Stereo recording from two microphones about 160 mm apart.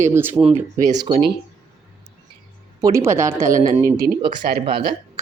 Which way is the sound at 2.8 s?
20° right (ahead or behind).